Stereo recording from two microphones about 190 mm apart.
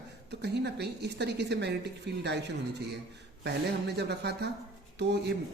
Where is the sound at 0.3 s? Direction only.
60° right (ahead or behind).